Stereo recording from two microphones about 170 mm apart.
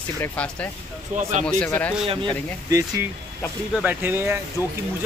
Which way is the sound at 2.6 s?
20° right (ahead or behind).